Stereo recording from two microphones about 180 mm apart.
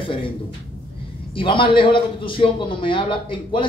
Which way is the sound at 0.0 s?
30° left (ahead or behind).